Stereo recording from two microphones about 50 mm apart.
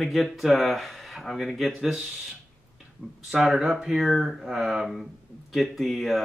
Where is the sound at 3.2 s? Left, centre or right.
Centre.